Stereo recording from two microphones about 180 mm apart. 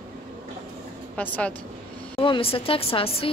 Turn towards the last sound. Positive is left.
turn(degrees=30)  # may be behind; listen again after turning